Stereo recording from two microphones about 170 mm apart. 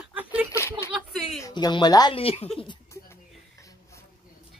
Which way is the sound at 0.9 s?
Centre (ahead or behind).